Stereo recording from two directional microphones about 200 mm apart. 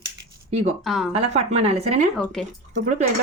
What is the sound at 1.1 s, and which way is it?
Speech, 30° right (ahead or behind).